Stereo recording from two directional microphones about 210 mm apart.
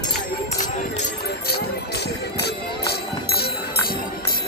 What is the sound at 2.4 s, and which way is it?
Jingle bell, 50° left (ahead or behind).